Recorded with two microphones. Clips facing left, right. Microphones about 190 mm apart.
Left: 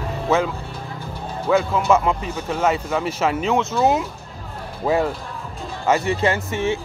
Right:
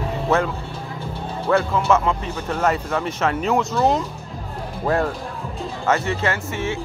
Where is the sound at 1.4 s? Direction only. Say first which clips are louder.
Left 1 dB; 10° left (ahead or behind).